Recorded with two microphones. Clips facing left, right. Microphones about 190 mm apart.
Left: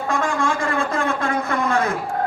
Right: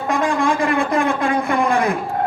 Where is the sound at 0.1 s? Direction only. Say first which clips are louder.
Right 4 dB; 15° right (ahead or behind).